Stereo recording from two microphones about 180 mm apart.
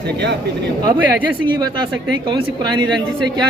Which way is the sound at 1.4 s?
25° right (ahead or behind).